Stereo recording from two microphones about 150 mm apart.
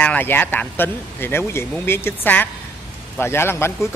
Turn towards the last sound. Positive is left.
turn(degrees=15)  # may be behind; listen again after turning